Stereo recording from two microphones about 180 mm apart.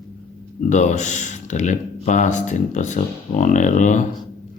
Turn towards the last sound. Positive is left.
turn(degrees=45)  # may be behind; listen again after turning